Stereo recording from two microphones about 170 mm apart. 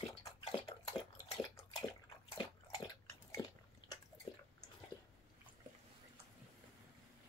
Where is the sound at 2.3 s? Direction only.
25° left (ahead or behind).